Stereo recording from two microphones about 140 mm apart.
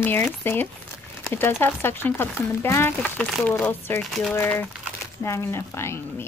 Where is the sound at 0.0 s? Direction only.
15° left (ahead or behind).